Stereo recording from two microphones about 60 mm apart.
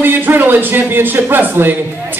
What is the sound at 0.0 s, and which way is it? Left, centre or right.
Speech, right.